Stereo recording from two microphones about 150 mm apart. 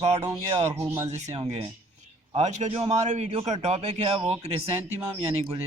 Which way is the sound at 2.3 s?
50° right (ahead or behind).